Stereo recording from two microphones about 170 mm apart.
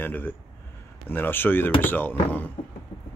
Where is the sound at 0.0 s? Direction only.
10° left (ahead or behind).